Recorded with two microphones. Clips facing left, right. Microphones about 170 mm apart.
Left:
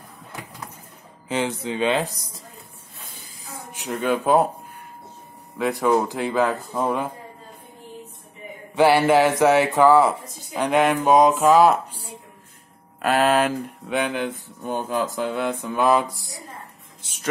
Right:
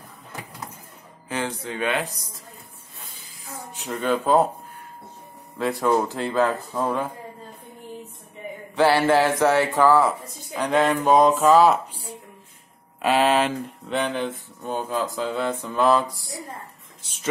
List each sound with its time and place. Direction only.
1.3 s speech: 20° left (ahead or behind)
3.7 s speech: 15° left (ahead or behind)
5.6 s speech: 15° left (ahead or behind)
8.7 s speech: 15° left (ahead or behind)
13.0 s speech: centre (ahead or behind)